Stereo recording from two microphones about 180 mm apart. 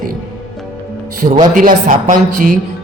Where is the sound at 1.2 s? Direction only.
50° right (ahead or behind).